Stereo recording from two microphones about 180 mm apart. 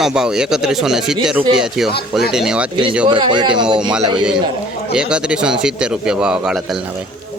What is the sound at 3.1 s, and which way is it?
Speech, 25° right (ahead or behind).